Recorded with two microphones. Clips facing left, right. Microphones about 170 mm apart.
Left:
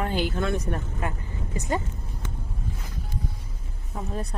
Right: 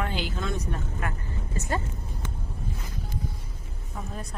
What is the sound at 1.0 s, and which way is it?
Speech, 25° left (ahead or behind).